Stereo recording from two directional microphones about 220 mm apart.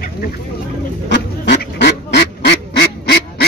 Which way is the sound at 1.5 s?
45° left (ahead or behind).